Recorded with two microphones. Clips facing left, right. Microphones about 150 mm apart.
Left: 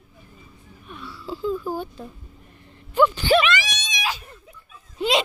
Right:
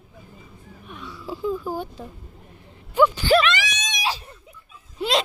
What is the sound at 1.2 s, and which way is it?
Speech, 10° right (ahead or behind).